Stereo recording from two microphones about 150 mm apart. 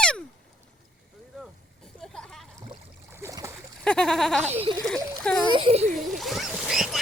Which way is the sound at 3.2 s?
20° right (ahead or behind).